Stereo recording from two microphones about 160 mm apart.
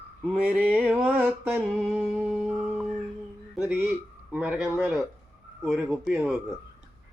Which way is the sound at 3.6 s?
15° right (ahead or behind).